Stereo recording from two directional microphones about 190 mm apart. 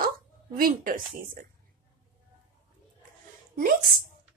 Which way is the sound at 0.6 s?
45° right (ahead or behind).